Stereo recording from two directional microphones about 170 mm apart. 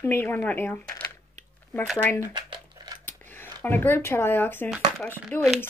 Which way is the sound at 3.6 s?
10° left (ahead or behind).